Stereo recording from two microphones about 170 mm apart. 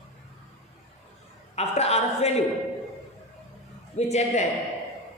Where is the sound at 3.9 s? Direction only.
40° left (ahead or behind).